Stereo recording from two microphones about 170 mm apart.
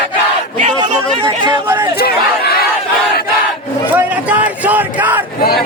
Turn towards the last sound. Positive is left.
turn(degrees=-10)  # may be behind; listen again after turning